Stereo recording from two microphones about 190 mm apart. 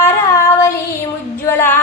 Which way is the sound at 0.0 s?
15° left (ahead or behind).